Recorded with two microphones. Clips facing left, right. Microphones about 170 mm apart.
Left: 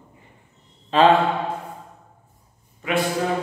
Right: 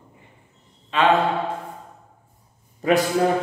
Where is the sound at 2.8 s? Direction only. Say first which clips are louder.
Right 6 dB; 35° right (ahead or behind).